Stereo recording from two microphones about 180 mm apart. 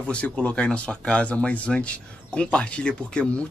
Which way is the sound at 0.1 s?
5° left (ahead or behind).